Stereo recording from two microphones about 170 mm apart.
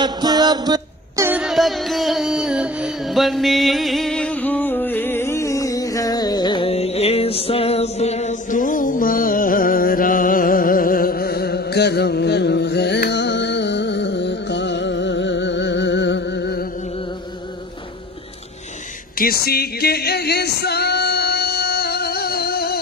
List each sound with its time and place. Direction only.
0.0 s music: 25° right (ahead or behind)
1.4 s music: centre (ahead or behind); by 16.6 s 80° left
19.1 s female singing: 60° left (ahead or behind)